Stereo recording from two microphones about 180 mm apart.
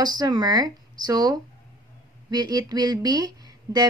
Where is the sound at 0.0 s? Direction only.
20° right (ahead or behind).